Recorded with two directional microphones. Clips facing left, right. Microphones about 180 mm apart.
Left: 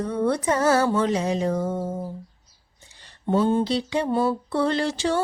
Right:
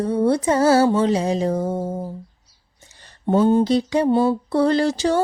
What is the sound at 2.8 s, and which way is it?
Speech, 45° right (ahead or behind).